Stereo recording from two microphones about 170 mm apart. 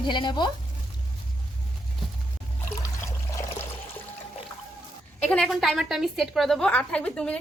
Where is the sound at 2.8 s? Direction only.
20° left (ahead or behind).